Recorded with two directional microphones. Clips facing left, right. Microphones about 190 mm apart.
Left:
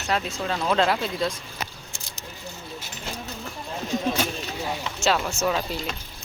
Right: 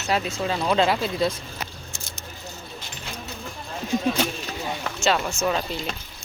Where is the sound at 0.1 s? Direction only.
5° right (ahead or behind).